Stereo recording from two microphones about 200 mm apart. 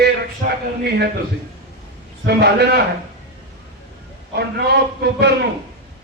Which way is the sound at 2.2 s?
55° right (ahead or behind).